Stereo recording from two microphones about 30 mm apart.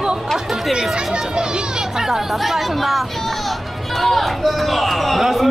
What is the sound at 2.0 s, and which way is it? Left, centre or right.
Speech, centre.